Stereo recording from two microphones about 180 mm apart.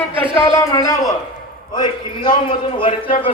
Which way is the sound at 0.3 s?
15° left (ahead or behind).